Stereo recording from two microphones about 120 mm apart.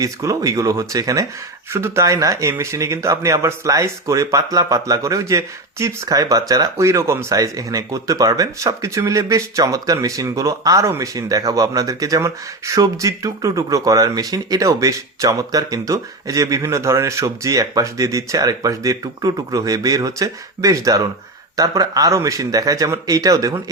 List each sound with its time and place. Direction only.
0.0 s speech: 25° right (ahead or behind)